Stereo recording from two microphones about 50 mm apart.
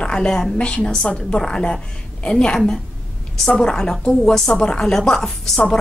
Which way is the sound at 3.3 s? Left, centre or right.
Centre.